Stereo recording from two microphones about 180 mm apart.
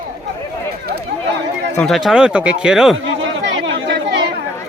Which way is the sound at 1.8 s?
Centre (ahead or behind).